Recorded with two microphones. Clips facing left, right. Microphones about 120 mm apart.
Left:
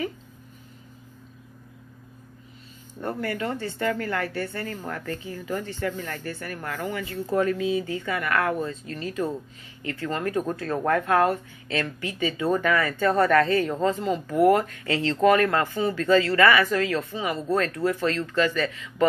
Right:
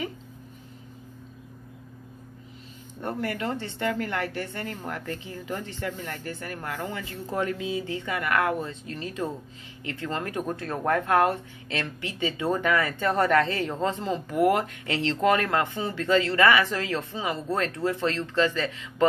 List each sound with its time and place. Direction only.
3.0 s speech: 20° right (ahead or behind)